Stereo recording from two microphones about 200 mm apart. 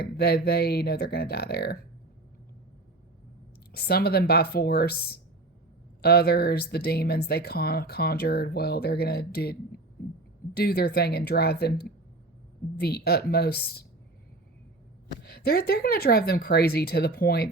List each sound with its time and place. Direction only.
0.0 s speech: 50° left (ahead or behind)
3.7 s speech: 50° left (ahead or behind)
15.2 s speech: 55° left (ahead or behind)